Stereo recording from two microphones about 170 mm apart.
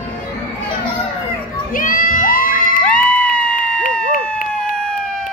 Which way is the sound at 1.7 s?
55° left (ahead or behind).